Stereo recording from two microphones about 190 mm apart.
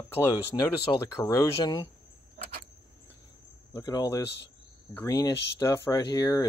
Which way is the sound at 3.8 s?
20° left (ahead or behind).